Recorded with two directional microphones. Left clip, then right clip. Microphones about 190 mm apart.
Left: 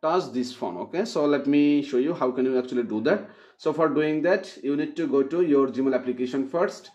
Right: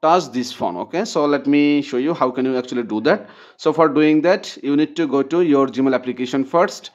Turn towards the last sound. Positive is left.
turn(degrees=-35)  # may be behind; listen again after turning